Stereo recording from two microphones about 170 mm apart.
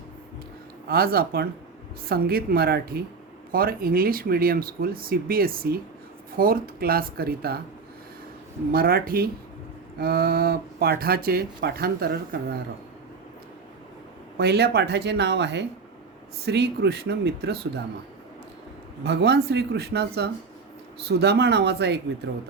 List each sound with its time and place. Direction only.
0.9 s speech: 65° right (ahead or behind)
8.7 s speech: 60° right (ahead or behind)
14.3 s speech: 75° right (ahead or behind); by 15.6 s 90° right
16.5 s speech: 80° right
19.0 s speech: 80° right